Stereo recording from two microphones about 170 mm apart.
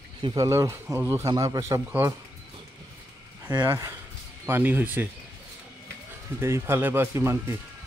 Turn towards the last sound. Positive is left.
turn(degrees=-15)  # may be behind; listen again after turning